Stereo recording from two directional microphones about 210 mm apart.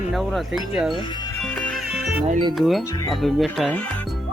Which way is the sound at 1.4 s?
Centre (ahead or behind).